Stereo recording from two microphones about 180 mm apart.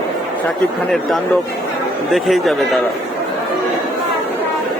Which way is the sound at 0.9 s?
Centre (ahead or behind).